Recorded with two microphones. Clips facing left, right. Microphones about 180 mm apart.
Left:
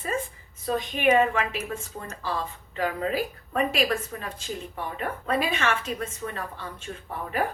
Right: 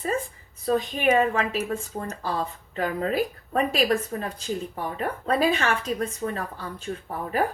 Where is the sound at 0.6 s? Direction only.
35° right (ahead or behind).